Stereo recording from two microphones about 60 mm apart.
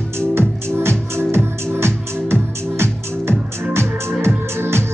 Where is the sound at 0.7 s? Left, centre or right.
Right.